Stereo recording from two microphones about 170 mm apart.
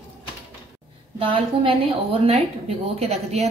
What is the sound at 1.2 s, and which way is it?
A woman's voice, 30° right (ahead or behind).